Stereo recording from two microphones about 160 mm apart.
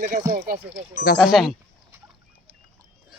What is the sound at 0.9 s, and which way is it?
Speech, 55° left (ahead or behind).